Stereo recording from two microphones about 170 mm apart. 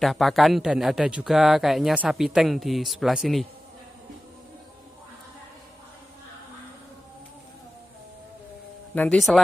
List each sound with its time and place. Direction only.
0.0 s speech: centre (ahead or behind)
8.9 s speech: 10° left (ahead or behind)